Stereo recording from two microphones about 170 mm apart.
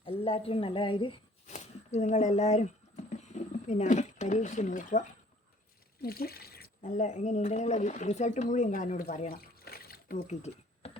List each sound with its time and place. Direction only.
0.0 s a woman's voice: 35° left (ahead or behind)
1.5 s speech: 40° left (ahead or behind)
6.0 s speech: 65° left (ahead or behind)
9.3 s water: 65° left (ahead or behind)
10.2 s a sound: 40° left (ahead or behind)